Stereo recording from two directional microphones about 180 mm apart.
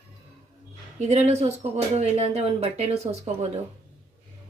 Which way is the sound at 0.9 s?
40° right (ahead or behind).